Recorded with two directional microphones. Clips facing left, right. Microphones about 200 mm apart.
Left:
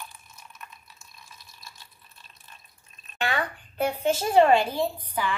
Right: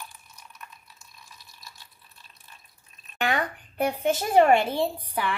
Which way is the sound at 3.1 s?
15° right (ahead or behind).